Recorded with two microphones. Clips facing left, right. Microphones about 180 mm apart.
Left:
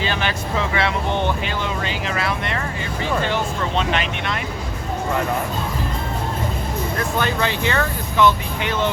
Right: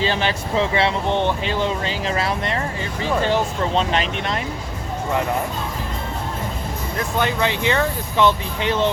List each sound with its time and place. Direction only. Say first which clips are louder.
0.0 s speech: right 2 dB; 30° right (ahead or behind)
7.2 s speech: right 2 dB; 20° right (ahead or behind)